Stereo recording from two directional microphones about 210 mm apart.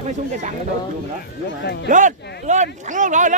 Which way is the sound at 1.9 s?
35° right (ahead or behind).